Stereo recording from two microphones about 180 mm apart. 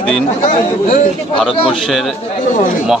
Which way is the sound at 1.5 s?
30° left (ahead or behind).